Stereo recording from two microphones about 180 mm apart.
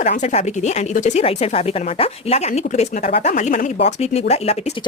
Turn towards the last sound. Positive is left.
turn(degrees=30)  # may be behind; listen again after turning